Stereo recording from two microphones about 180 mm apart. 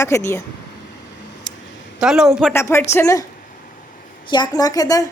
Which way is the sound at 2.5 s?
15° left (ahead or behind).